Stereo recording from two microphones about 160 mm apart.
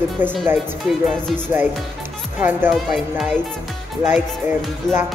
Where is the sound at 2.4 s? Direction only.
10° right (ahead or behind).